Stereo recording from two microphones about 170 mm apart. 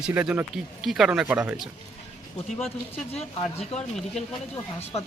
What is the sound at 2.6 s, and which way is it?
Speech, 35° left (ahead or behind).